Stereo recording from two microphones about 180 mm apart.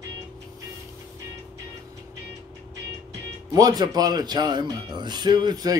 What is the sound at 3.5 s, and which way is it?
Speech, 20° right (ahead or behind).